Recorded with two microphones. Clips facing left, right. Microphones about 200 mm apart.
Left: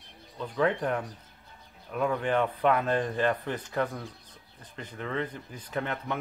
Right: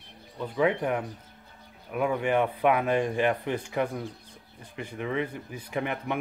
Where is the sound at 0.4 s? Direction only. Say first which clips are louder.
Right 2 dB; 10° right (ahead or behind).